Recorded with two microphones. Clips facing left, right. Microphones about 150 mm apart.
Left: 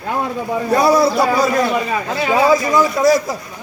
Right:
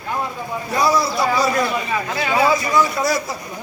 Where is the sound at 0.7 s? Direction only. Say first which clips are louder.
Left 5 dB; 60° left (ahead or behind).